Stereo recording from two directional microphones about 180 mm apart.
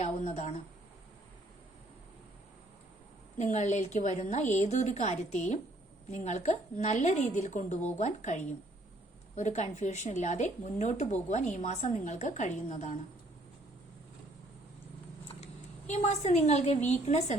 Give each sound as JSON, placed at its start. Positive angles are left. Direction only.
{"t": 0.0, "sound": "speech", "side_deg": 40}
{"t": 3.3, "sound": "speech", "side_deg": 40}
{"t": 15.9, "sound": "speech", "side_deg": 40}